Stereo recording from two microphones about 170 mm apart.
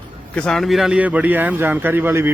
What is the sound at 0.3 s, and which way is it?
Speech, 5° left (ahead or behind).